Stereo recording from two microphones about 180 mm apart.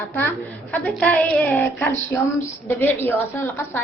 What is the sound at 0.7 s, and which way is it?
A woman's voice, 10° left (ahead or behind).